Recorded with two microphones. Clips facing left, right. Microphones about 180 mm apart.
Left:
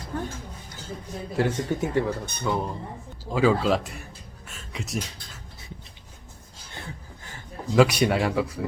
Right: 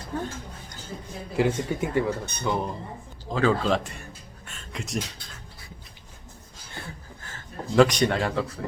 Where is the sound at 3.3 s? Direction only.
10° left (ahead or behind).